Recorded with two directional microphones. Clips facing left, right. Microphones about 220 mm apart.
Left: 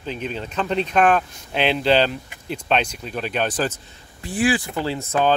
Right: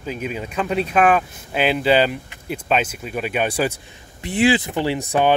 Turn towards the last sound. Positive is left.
turn(degrees=-15)  # may be behind; listen again after turning